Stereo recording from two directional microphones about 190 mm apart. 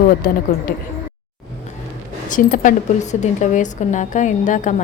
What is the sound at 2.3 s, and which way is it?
Speech, 45° left (ahead or behind).